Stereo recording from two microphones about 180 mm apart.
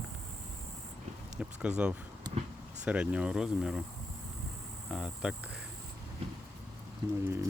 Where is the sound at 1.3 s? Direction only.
5° right (ahead or behind).